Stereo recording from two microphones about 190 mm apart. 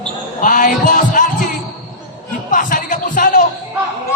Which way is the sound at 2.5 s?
45° left (ahead or behind).